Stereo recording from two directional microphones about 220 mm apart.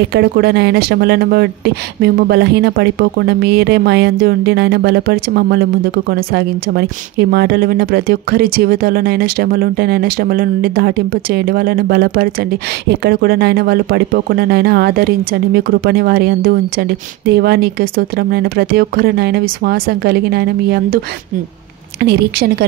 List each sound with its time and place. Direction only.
0.0 s speech: 50° right (ahead or behind)
22.0 s speech: 45° right (ahead or behind)